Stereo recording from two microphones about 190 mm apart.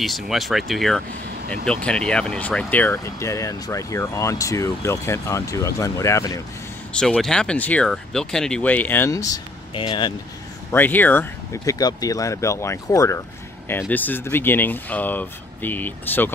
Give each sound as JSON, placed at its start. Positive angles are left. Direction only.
{"t": 0.0, "sound": "speech", "side_deg": 0}
{"t": 6.9, "sound": "speech", "side_deg": 5}
{"t": 10.7, "sound": "speech", "side_deg": 10}